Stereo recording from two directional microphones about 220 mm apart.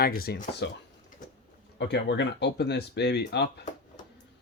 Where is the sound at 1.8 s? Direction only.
50° left (ahead or behind).